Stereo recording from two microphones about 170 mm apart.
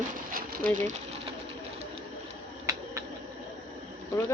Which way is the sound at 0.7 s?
45° right (ahead or behind).